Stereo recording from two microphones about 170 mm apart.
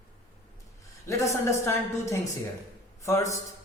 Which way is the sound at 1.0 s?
15° left (ahead or behind).